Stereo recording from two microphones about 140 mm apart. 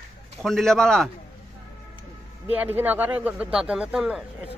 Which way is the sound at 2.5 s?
15° right (ahead or behind).